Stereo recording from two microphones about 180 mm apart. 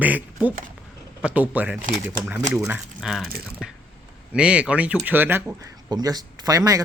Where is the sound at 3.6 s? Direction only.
5° right (ahead or behind).